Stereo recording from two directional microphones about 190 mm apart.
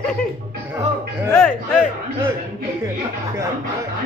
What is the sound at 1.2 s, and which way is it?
Music, 10° left (ahead or behind).